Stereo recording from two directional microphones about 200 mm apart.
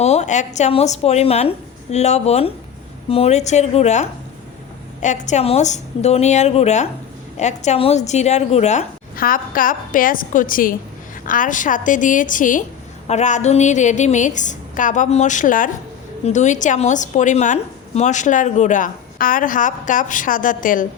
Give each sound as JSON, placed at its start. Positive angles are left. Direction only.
{"t": 0.0, "sound": "a woman's voice", "side_deg": 35}